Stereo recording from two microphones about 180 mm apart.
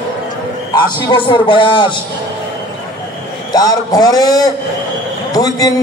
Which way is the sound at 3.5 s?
20° left (ahead or behind).